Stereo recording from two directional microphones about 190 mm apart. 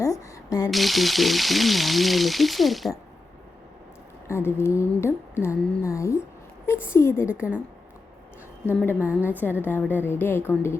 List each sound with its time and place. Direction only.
0.0 s a sound: 15° left (ahead or behind)
0.7 s speech: centre (ahead or behind)
4.3 s speech: 15° left (ahead or behind)
7.3 s a woman's voice: 5° right (ahead or behind)
9.0 s a woman's voice: 10° right (ahead or behind)
9.3 s speech: 10° left (ahead or behind)